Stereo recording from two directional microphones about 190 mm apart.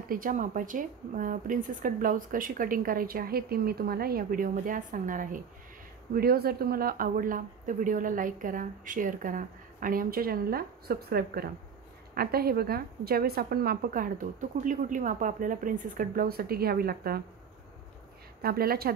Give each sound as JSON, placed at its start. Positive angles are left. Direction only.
{"t": 0.1, "sound": "speech", "side_deg": -45}
{"t": 18.4, "sound": "speech", "side_deg": -55}